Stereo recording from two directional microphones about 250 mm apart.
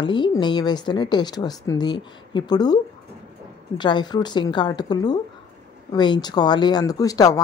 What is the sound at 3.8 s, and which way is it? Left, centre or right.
A woman's voice, centre.